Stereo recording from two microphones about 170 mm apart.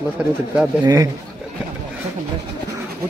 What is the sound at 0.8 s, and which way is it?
Speech, 25° right (ahead or behind).